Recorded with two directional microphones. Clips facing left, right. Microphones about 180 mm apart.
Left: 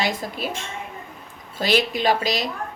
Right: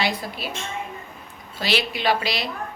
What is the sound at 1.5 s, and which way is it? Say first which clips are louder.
Speech: left 4 dB; 45° left (ahead or behind).